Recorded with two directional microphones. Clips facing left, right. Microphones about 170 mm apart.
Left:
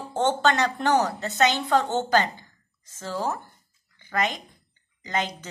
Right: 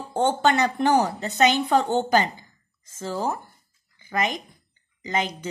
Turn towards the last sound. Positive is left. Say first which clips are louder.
# right 2 dB
turn(degrees=-15)  # may be behind; listen again after turning